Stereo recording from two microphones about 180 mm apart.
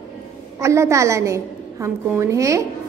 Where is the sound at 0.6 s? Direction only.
15° right (ahead or behind).